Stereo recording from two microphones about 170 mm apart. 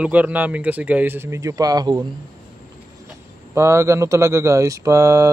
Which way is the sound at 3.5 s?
15° right (ahead or behind).